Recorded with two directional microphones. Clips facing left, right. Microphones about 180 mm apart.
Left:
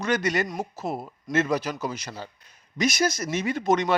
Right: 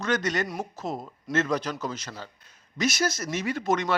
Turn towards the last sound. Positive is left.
turn(degrees=20)  # may be behind; listen again after turning